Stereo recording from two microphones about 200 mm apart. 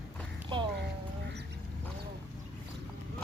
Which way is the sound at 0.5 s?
25° right (ahead or behind).